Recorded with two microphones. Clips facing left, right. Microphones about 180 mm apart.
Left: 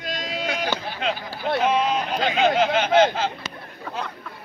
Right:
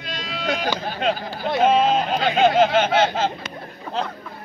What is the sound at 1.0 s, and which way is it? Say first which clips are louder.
Speech: right 4 dB; 40° right (ahead or behind).